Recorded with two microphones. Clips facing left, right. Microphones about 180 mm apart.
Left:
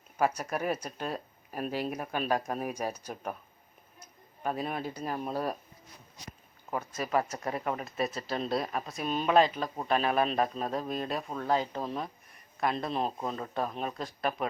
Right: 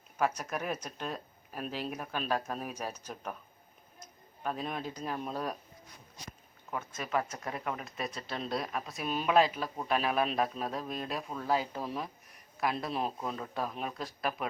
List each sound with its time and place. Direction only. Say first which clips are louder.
0.2 s speech: left 3 dB; 10° left (ahead or behind)
4.4 s speech: left 3 dB; 10° left (ahead or behind)
6.7 s speech: left 4 dB; 35° left (ahead or behind)
7.9 s a man's voice: left 6 dB; 5° left (ahead or behind)
13.0 s speech: left 2 dB; 35° left (ahead or behind)
13.5 s a man's voice: left 3 dB; 5° right (ahead or behind)